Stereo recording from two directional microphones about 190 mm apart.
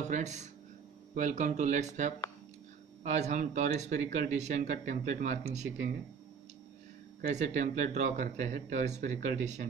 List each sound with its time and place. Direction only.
0.1 s speech: 35° right (ahead or behind)
7.2 s speech: 40° right (ahead or behind)